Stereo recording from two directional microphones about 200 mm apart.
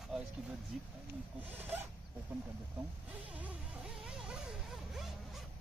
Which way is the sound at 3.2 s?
5° right (ahead or behind).